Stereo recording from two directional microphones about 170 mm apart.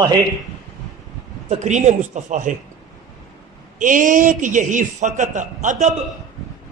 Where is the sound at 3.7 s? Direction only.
50° right (ahead or behind).